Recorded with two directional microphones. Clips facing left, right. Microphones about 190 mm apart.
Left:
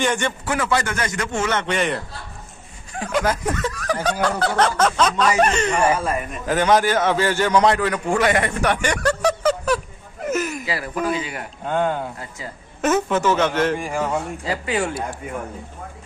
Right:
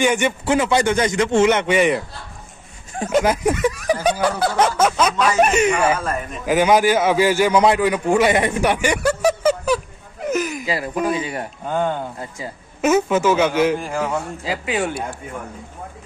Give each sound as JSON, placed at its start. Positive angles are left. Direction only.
{"t": 0.0, "sound": "a man's voice", "side_deg": -10}
{"t": 0.5, "sound": "a man's voice", "side_deg": -20}
{"t": 2.9, "sound": "a man's voice", "side_deg": -25}
{"t": 5.9, "sound": "a man's voice", "side_deg": 10}
{"t": 6.4, "sound": "a man's voice", "side_deg": -10}
{"t": 10.2, "sound": "a sound", "side_deg": 0}
{"t": 10.7, "sound": "a man's voice", "side_deg": -20}
{"t": 11.6, "sound": "a man's voice", "side_deg": 0}